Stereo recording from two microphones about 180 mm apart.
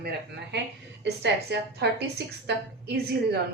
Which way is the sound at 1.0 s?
70° right (ahead or behind).